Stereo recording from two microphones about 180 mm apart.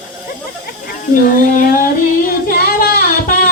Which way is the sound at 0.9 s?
50° left (ahead or behind).